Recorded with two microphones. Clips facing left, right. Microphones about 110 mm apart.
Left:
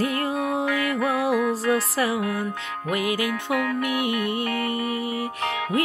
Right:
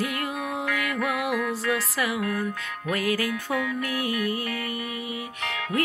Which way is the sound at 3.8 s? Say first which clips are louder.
Left 3 dB; 20° left (ahead or behind).